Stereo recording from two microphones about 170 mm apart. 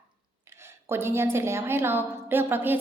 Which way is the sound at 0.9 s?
15° right (ahead or behind).